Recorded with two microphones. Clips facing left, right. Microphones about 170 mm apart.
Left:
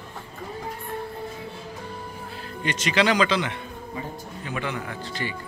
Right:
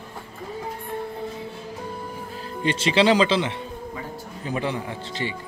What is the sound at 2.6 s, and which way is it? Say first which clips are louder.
Speech: right 3 dB; 30° right (ahead or behind).